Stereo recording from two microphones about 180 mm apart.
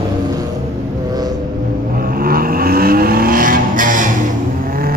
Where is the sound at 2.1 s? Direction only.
55° right (ahead or behind).